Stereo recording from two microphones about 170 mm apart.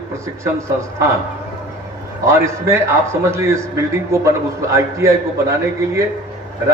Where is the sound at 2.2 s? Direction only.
15° right (ahead or behind).